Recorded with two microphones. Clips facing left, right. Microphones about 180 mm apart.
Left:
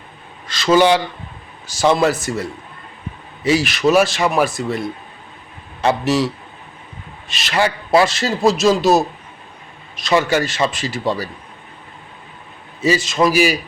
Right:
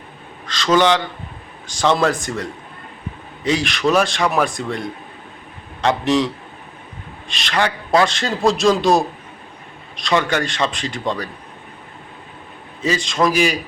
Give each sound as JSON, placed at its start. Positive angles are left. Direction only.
{"t": 0.4, "sound": "a man's voice", "side_deg": 10}
{"t": 12.8, "sound": "a man's voice", "side_deg": 5}